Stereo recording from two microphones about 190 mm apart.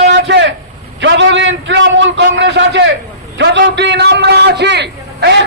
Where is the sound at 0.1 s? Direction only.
70° right (ahead or behind).